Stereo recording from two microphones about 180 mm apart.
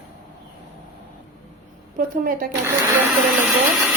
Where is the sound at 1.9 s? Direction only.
50° right (ahead or behind).